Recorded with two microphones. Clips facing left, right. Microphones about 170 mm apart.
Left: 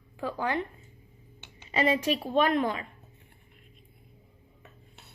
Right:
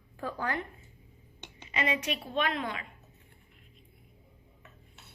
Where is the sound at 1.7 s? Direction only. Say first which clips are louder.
Left 6 dB; 35° left (ahead or behind).